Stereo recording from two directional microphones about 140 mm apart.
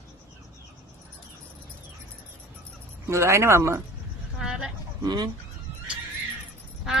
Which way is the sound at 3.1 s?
20° right (ahead or behind).